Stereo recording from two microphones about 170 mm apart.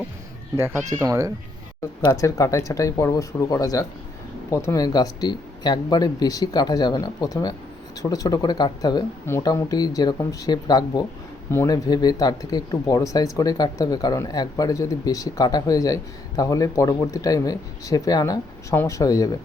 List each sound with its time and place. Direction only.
1.0 s speech: 20° right (ahead or behind)
2.0 s speech: 20° left (ahead or behind)